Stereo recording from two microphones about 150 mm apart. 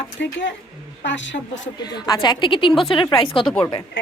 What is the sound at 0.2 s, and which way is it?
Speech, 90° left.